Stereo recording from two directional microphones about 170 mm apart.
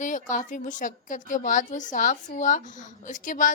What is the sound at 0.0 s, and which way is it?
A woman's voice, 50° left (ahead or behind).